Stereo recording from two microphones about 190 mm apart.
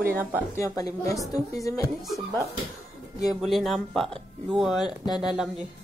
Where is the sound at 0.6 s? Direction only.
15° left (ahead or behind).